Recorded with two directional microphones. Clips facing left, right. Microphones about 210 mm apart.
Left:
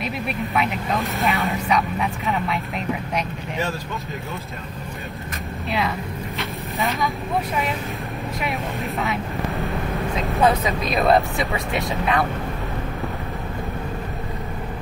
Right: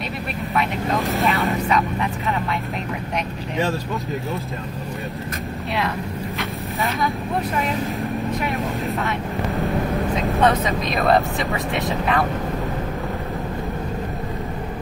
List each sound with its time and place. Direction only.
0.6 s speech: centre (ahead or behind)
5.7 s vehicle: centre (ahead or behind)
8.5 s speech: centre (ahead or behind)